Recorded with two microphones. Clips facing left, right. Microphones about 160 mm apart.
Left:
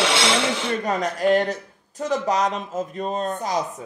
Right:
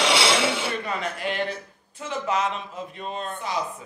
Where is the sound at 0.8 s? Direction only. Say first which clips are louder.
Left 8 dB; 40° left (ahead or behind).